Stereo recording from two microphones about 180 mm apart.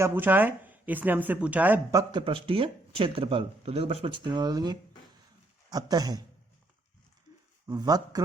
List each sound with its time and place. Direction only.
0.0 s speech: 10° right (ahead or behind)
2.2 s speech: 30° right (ahead or behind)
7.7 s speech: 20° right (ahead or behind)